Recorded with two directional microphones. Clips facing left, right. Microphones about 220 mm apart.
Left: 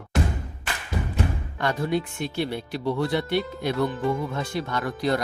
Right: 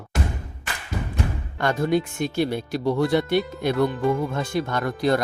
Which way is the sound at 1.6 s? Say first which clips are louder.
Right 4 dB; 45° right (ahead or behind).